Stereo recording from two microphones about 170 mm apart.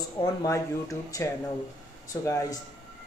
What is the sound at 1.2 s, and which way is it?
A man's voice, 15° left (ahead or behind).